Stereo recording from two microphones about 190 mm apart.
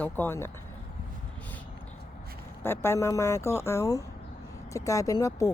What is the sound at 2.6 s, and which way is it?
Speech, 15° left (ahead or behind).